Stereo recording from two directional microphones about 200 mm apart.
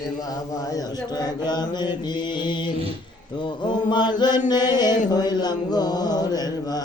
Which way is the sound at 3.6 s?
20° left (ahead or behind).